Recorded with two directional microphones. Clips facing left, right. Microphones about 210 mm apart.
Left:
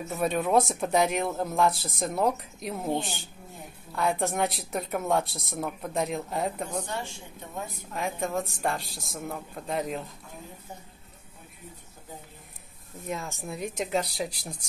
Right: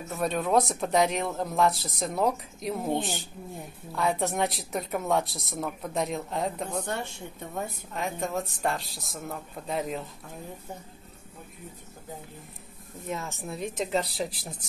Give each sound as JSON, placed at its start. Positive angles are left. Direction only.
{"t": 0.1, "sound": "speech", "side_deg": 0}
{"t": 6.9, "sound": "speech", "side_deg": -60}
{"t": 7.9, "sound": "speech", "side_deg": 0}
{"t": 13.1, "sound": "speech", "side_deg": 0}